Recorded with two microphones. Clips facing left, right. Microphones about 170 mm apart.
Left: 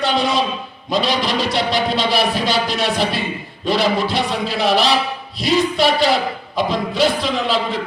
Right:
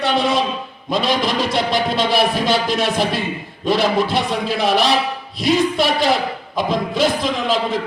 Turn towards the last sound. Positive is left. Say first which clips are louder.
# even
turn(degrees=-50)  # may be behind; listen again after turning